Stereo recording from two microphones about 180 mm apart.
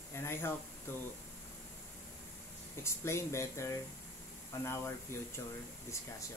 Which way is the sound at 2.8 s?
15° left (ahead or behind).